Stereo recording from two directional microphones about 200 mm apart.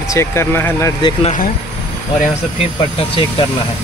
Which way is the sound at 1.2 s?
40° left (ahead or behind).